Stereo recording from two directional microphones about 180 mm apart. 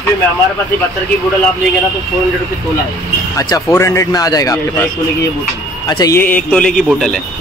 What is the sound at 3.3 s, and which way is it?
Speech, 20° left (ahead or behind).